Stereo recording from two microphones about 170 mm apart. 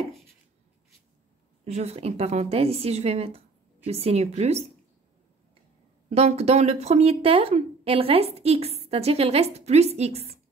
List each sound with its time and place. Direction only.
1.6 s speech: 40° right (ahead or behind)
6.0 s speech: 40° right (ahead or behind)